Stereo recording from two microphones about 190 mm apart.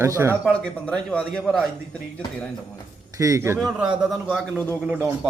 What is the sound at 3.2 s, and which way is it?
Speech, 15° right (ahead or behind).